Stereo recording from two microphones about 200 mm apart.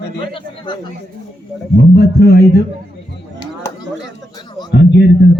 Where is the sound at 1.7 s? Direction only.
55° left (ahead or behind).